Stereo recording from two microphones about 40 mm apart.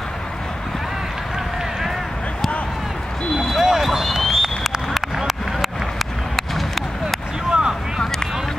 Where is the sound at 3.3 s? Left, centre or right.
Centre.